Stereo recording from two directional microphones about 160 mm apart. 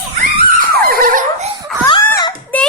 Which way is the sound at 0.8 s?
65° right (ahead or behind).